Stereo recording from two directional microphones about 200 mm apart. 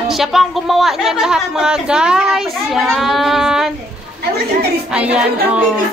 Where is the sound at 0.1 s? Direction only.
Centre (ahead or behind).